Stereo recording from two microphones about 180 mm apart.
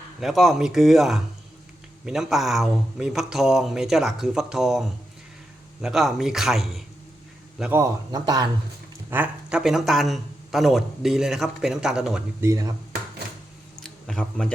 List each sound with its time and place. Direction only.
0.2 s speech: centre (ahead or behind)
7.6 s a man's voice: 15° right (ahead or behind)
9.0 s speech: 10° right (ahead or behind)
12.5 s a man's voice: 20° right (ahead or behind)
13.8 s speech: 5° left (ahead or behind)